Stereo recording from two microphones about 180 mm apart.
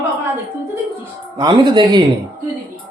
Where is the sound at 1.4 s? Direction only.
25° right (ahead or behind).